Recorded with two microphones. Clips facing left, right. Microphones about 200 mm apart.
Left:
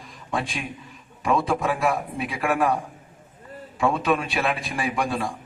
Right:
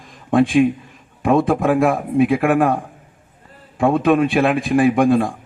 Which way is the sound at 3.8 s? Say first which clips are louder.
Right 8 dB; 55° right (ahead or behind).